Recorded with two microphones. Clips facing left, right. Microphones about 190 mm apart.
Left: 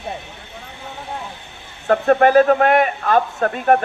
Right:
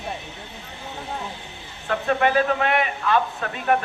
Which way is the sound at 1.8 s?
50° left (ahead or behind).